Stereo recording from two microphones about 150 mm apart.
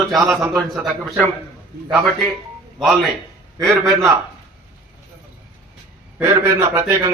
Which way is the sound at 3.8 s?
20° right (ahead or behind).